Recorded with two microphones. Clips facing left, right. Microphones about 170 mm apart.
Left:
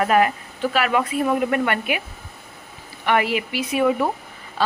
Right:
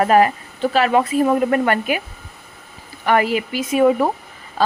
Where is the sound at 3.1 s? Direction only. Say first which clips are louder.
Right 3 dB; 40° right (ahead or behind).